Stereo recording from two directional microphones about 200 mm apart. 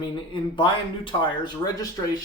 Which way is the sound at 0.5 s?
25° left (ahead or behind).